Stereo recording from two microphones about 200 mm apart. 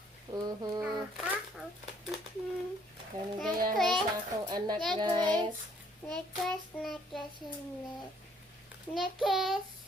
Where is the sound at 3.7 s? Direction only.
Centre (ahead or behind).